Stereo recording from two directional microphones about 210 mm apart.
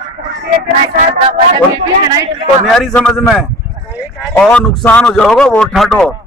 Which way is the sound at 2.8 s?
5° left (ahead or behind).